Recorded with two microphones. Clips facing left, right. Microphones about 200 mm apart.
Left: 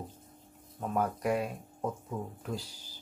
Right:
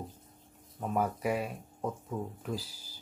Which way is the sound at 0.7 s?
5° right (ahead or behind).